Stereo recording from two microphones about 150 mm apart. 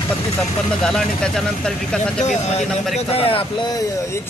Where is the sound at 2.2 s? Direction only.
50° left (ahead or behind); by 4.2 s 30° left (ahead or behind).